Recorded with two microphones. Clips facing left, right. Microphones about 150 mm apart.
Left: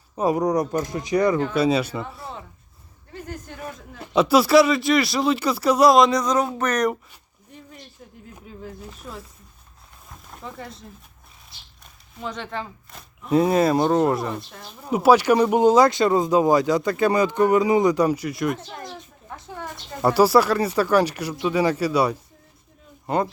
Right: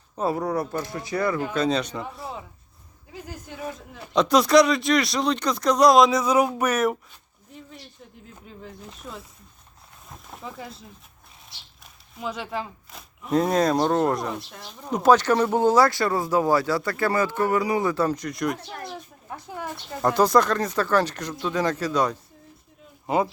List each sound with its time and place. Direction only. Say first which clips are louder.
0.2 s speech: left 4 dB; 15° left (ahead or behind); by 7.0 s 5° right (ahead or behind)
7.5 s a sound: even; centre (ahead or behind)
8.4 s speech: left 4 dB; 5° left (ahead or behind)
10.2 s a sound: left 1 dB; centre (ahead or behind)
11.8 s speech: even; 5° right (ahead or behind)
20.0 s speech: left 3 dB; 10° left (ahead or behind)
23.0 s speech: even; 5° right (ahead or behind)